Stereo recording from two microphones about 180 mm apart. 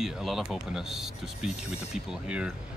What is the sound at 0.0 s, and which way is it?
Speech, centre (ahead or behind).